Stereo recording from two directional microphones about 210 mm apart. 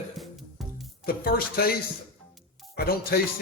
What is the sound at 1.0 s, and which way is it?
Speech, 45° left (ahead or behind).